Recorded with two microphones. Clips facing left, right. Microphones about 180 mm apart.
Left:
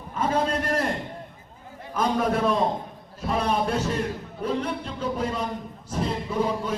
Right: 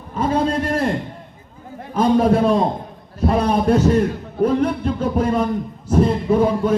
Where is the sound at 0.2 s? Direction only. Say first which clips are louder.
Right 6 dB; 30° right (ahead or behind).